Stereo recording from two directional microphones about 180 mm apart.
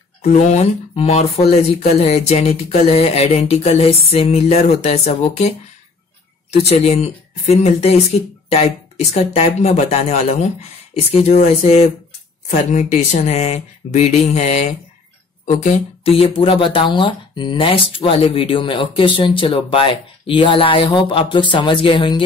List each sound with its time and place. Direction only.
0.2 s speech: 40° left (ahead or behind)
6.5 s speech: 35° left (ahead or behind)